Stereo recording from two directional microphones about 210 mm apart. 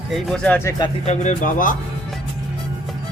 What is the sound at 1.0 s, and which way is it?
Speech, 35° left (ahead or behind).